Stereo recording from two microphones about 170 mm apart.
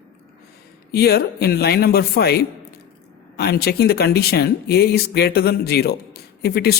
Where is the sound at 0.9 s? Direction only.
70° left (ahead or behind).